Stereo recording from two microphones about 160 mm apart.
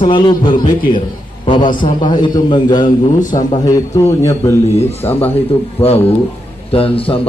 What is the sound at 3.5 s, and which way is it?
A man's voice, 20° left (ahead or behind).